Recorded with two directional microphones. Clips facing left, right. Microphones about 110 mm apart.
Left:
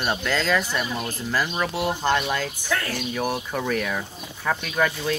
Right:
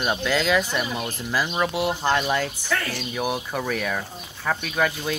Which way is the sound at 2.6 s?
10° left (ahead or behind).